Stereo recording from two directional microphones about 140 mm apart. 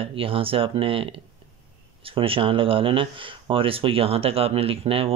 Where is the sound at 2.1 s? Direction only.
40° right (ahead or behind).